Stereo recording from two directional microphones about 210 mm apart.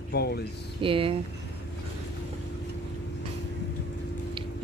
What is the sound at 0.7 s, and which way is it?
Speech, 25° right (ahead or behind).